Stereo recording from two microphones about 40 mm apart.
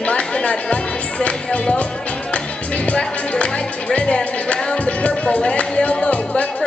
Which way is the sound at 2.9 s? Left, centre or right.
Left.